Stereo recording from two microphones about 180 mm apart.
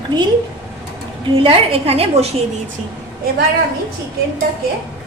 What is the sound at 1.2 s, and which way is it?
A woman's voice, 30° right (ahead or behind).